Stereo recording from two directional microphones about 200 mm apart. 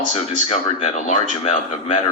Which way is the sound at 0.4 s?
35° left (ahead or behind).